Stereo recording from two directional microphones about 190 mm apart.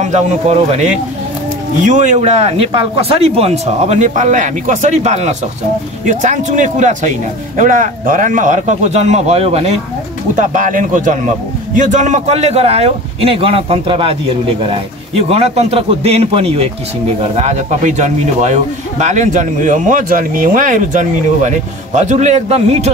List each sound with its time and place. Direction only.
0.0 s speech: 35° right (ahead or behind)